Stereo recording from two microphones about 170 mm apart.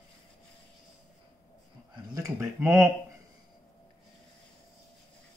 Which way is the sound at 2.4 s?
15° right (ahead or behind).